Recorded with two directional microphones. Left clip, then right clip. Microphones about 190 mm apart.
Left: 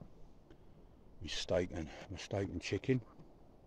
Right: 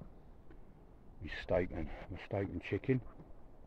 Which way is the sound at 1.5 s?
25° left (ahead or behind).